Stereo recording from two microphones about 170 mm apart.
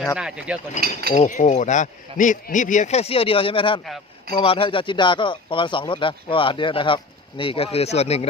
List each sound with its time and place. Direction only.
0.2 s speech: 5° right (ahead or behind)
1.1 s speech: 45° left (ahead or behind)